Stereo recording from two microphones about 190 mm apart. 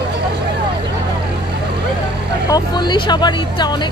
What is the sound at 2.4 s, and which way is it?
Speech, 20° left (ahead or behind).